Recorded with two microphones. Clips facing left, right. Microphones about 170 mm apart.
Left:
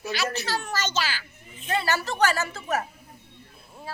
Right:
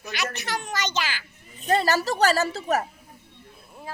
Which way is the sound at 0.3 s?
20° right (ahead or behind).